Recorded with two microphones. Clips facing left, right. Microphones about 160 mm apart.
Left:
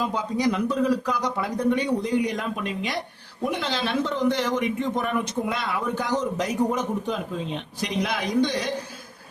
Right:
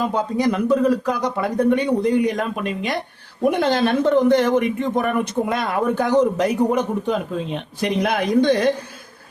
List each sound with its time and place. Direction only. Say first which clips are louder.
0.0 s speech: right 4 dB; 55° right (ahead or behind)